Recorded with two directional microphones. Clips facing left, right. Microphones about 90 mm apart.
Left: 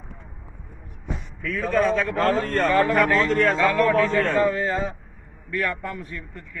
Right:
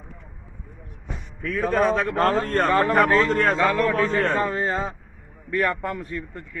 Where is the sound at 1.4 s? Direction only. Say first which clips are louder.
Right 1 dB; 35° right (ahead or behind).